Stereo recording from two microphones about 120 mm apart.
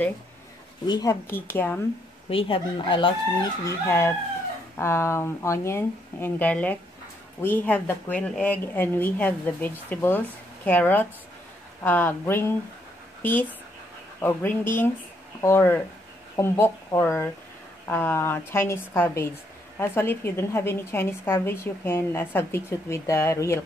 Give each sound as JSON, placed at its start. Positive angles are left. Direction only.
{"t": 0.8, "sound": "speech", "side_deg": 35}
{"t": 1.2, "sound": "speech", "side_deg": 20}
{"t": 2.2, "sound": "speech", "side_deg": 50}
{"t": 3.6, "sound": "a woman's voice", "side_deg": 25}